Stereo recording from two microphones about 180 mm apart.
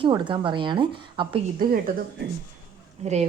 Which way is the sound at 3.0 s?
40° right (ahead or behind).